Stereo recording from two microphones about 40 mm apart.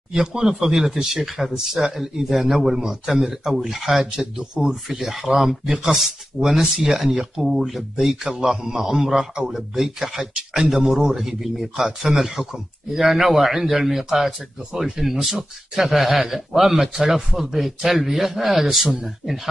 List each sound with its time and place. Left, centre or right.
0.1 s speech: centre
10.3 s speech: centre
10.7 s speech: centre